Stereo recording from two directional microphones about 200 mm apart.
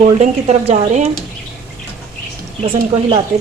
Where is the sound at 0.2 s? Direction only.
35° right (ahead or behind).